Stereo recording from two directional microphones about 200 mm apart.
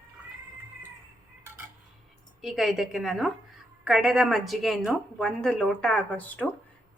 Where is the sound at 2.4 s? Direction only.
Centre (ahead or behind).